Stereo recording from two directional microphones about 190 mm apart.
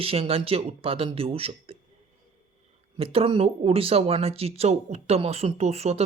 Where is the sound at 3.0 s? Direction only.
30° right (ahead or behind).